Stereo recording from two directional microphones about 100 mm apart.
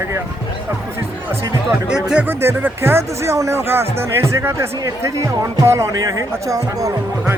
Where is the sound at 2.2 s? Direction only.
25° right (ahead or behind).